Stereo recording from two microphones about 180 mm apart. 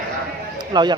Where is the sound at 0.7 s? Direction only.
25° right (ahead or behind).